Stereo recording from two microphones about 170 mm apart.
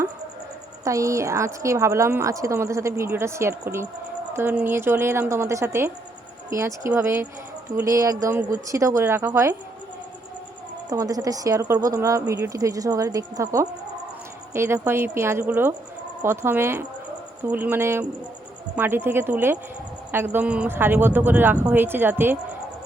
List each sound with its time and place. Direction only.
0.9 s a woman's voice: 20° right (ahead or behind)
10.8 s a woman's voice: 20° right (ahead or behind)